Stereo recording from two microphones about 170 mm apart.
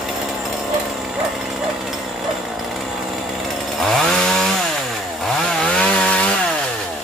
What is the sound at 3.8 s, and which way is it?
Chainsaw, 5° left (ahead or behind).